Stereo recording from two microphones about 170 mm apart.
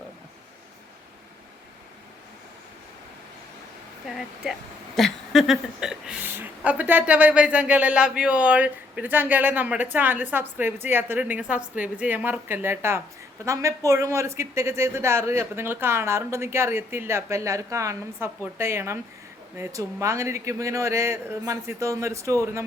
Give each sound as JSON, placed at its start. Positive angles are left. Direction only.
{"t": 4.0, "sound": "a woman's voice", "side_deg": 0}